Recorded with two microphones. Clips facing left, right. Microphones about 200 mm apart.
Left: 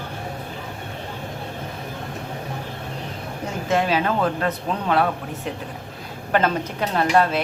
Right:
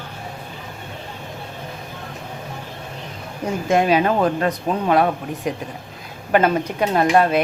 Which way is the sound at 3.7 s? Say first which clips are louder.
Right 4 dB; 15° right (ahead or behind).